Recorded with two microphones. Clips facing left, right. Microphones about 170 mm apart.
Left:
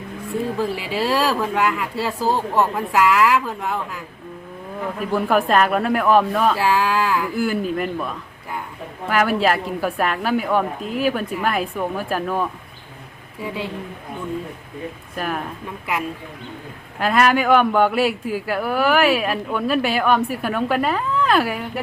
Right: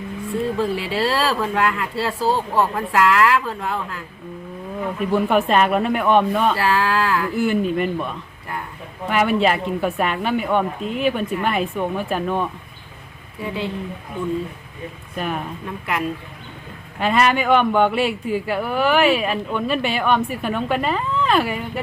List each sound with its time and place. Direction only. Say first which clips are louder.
0.6 s speech: right 1 dB; 10° left (ahead or behind)
6.6 s speech: even; 15° left (ahead or behind)
7.3 s a man's voice: right 2 dB; centre (ahead or behind)
15.1 s speech: right 1 dB; centre (ahead or behind)
17.0 s speech: left 1 dB; 5° left (ahead or behind)